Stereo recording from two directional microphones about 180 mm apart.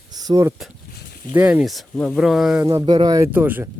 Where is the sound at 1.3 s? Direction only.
10° right (ahead or behind).